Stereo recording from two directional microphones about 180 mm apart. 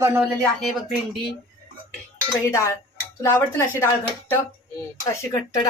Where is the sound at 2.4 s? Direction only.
15° left (ahead or behind).